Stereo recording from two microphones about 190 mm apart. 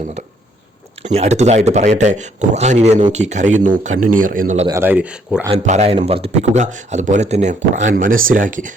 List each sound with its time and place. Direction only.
1.0 s speech: 35° right (ahead or behind)
4.7 s speech: 10° right (ahead or behind)
5.6 s speech: 35° right (ahead or behind)